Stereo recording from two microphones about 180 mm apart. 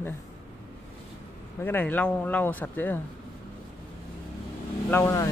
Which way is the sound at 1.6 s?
10° left (ahead or behind).